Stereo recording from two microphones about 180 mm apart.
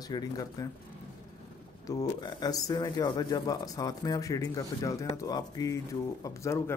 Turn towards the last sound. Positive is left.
turn(degrees=15)  # may be behind; listen again after turning